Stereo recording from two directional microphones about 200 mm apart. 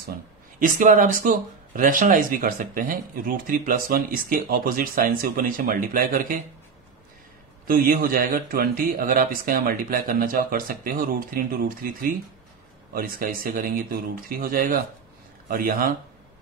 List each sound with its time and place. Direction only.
0.6 s speech: 40° right (ahead or behind)
7.6 s speech: 45° right (ahead or behind)